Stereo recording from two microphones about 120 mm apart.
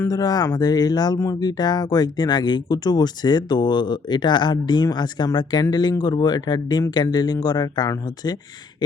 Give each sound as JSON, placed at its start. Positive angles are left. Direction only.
{"t": 0.0, "sound": "speech", "side_deg": 30}